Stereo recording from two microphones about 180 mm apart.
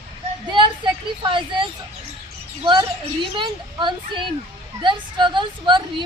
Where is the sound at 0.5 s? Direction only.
25° right (ahead or behind).